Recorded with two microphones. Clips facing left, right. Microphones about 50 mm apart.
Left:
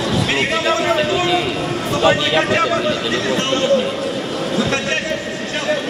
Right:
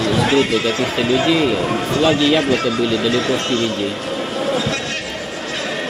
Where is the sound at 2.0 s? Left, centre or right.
Centre.